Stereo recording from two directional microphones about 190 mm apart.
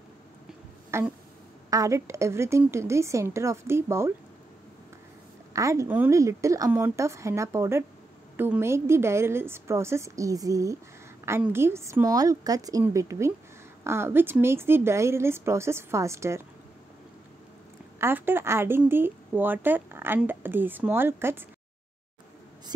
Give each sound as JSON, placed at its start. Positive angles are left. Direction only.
{"t": 0.9, "sound": "a sound", "side_deg": -15}
{"t": 1.7, "sound": "a woman's voice", "side_deg": -15}
{"t": 5.5, "sound": "a woman's voice", "side_deg": -15}
{"t": 18.0, "sound": "a woman's voice", "side_deg": -10}